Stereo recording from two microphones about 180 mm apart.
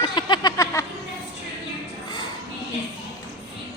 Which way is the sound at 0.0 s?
25° left (ahead or behind).